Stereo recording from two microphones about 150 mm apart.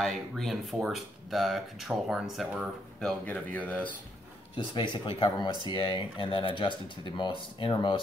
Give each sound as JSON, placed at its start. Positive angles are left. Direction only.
{"t": 0.0, "sound": "speech", "side_deg": 0}
{"t": 3.0, "sound": "speech", "side_deg": 5}
{"t": 4.7, "sound": "speech", "side_deg": 30}